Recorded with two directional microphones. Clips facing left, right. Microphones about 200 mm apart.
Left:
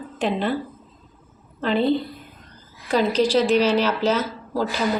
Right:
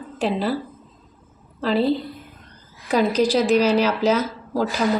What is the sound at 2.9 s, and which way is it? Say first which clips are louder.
Speech: even; 40° right (ahead or behind).